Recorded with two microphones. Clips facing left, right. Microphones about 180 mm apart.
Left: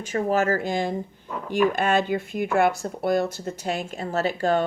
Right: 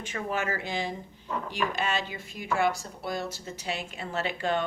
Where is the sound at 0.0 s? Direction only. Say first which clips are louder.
Left 9 dB; 40° left (ahead or behind).